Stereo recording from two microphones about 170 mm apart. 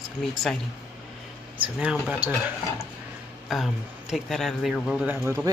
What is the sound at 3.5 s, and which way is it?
Speech, centre (ahead or behind).